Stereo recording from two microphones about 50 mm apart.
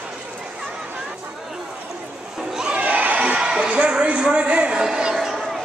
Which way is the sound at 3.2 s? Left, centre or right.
Centre.